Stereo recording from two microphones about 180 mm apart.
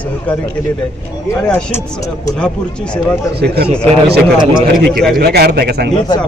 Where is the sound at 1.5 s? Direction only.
10° left (ahead or behind).